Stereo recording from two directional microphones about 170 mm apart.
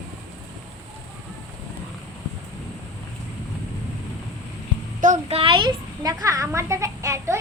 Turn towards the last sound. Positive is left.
turn(degrees=-15)  # may be behind; listen again after turning